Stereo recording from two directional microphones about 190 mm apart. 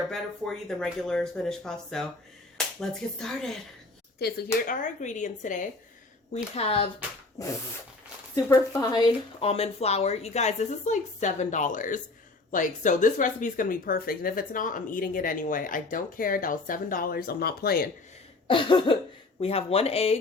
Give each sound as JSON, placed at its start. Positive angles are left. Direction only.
{"t": 0.1, "sound": "speech", "side_deg": 0}
{"t": 4.2, "sound": "speech", "side_deg": 55}
{"t": 7.4, "sound": "a sound", "side_deg": 15}
{"t": 8.4, "sound": "speech", "side_deg": 15}
{"t": 18.4, "sound": "cough", "side_deg": 25}
{"t": 19.4, "sound": "speech", "side_deg": 30}